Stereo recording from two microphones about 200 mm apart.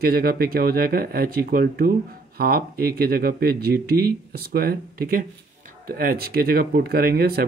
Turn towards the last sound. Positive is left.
turn(degrees=-50)  # may be behind; listen again after turning